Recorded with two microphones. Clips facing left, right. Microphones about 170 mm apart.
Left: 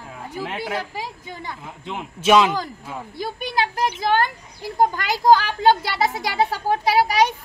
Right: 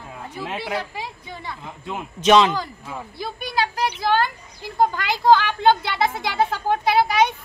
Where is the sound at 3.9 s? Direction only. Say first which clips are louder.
Even; 45° left (ahead or behind).